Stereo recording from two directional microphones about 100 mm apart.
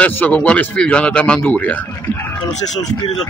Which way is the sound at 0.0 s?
15° left (ahead or behind).